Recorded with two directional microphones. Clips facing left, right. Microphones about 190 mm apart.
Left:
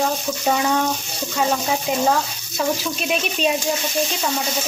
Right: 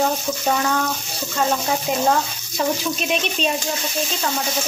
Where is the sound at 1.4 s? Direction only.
Centre (ahead or behind).